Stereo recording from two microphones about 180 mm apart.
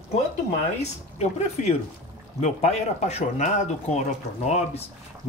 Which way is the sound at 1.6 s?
40° left (ahead or behind).